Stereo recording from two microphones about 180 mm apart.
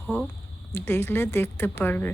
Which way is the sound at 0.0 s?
10° left (ahead or behind).